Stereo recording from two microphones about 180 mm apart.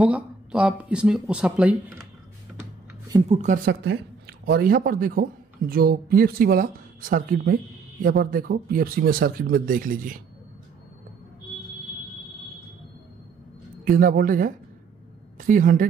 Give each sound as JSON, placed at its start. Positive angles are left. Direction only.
{"t": 0.0, "sound": "speech", "side_deg": -5}
{"t": 3.3, "sound": "speech", "side_deg": -40}
{"t": 3.8, "sound": "speech", "side_deg": -75}
{"t": 13.8, "sound": "speech", "side_deg": -50}